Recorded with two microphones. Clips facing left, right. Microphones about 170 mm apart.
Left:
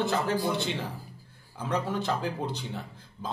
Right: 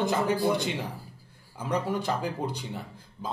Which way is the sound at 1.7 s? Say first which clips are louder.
Right 1 dB; 10° right (ahead or behind).